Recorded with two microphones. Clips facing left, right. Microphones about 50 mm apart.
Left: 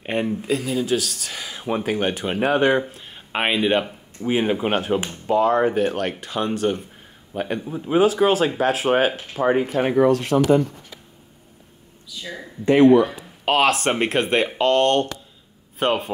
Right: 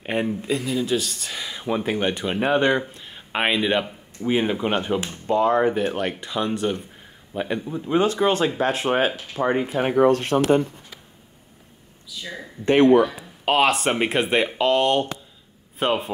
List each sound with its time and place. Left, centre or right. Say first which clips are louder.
0.0 s speech: left 1 dB; centre
9.7 s speech: left 2 dB; centre
9.9 s speech: even; right
12.1 s speech: left 1 dB; centre
13.5 s speech: left 1 dB; centre